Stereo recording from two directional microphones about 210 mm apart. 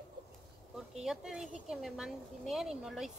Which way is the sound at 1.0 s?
Centre (ahead or behind).